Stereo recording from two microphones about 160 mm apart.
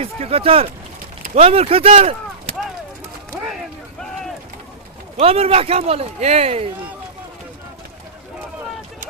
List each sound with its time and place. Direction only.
0.0 s speech: 40° right (ahead or behind)
5.1 s speech: 40° right (ahead or behind)